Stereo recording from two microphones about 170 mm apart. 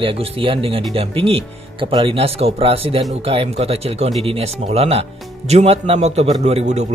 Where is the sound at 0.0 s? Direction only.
35° right (ahead or behind).